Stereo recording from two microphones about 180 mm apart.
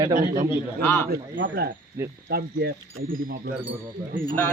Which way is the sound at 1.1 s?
80° right.